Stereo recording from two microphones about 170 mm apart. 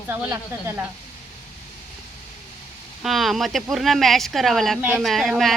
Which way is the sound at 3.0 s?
Centre (ahead or behind).